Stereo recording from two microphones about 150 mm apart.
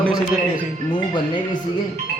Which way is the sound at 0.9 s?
30° left (ahead or behind).